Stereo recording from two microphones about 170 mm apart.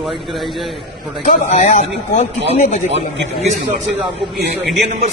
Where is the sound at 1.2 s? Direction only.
45° left (ahead or behind).